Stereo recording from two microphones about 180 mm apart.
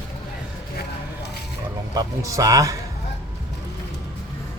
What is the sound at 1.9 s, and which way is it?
Speech, 20° right (ahead or behind).